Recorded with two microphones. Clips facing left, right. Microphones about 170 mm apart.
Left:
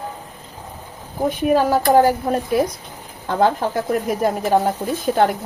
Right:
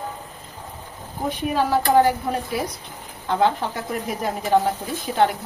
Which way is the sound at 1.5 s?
45° left (ahead or behind).